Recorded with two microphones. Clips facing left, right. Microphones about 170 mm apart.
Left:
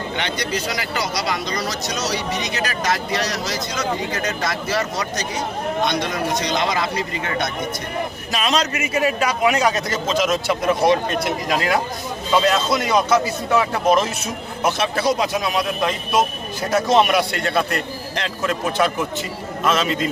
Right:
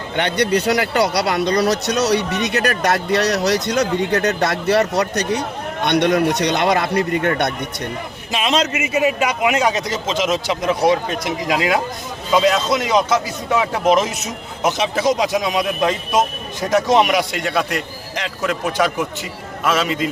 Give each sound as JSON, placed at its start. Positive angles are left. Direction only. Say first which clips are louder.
{"t": 0.2, "sound": "speech", "louder": "right 10 dB", "side_deg": -60}
{"t": 8.3, "sound": "speech", "louder": "right 3 dB", "side_deg": -25}
{"t": 10.2, "sound": "speech", "louder": "even", "side_deg": 0}
{"t": 12.3, "sound": "speech", "louder": "right 2 dB", "side_deg": -10}